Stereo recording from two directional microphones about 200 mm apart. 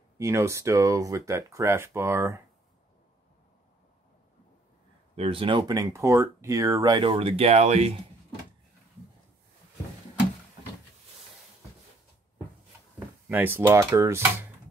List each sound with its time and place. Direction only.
0.2 s speech: 15° right (ahead or behind)
5.1 s speech: 30° right (ahead or behind)
13.3 s speech: 10° right (ahead or behind)